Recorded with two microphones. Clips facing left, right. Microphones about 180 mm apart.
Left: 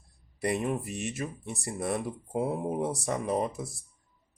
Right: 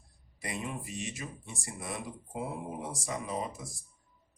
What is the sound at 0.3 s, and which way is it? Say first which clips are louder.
Speech: left 9 dB; 60° left (ahead or behind).